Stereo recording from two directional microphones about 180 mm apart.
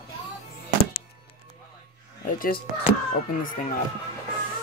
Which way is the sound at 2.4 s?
55° left (ahead or behind).